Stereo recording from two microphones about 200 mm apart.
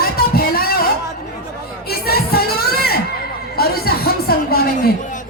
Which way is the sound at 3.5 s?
50° left (ahead or behind).